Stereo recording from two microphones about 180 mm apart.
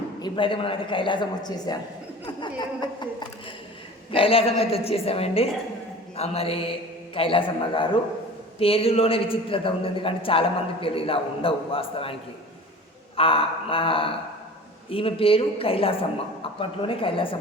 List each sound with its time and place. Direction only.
0.2 s a woman's voice: 30° left (ahead or behind)
13.1 s a man's voice: 30° left (ahead or behind)